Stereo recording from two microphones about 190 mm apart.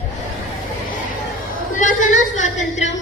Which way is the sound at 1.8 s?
40° left (ahead or behind).